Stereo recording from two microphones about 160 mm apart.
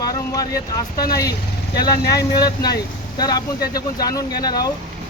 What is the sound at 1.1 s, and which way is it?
Speech, 20° left (ahead or behind).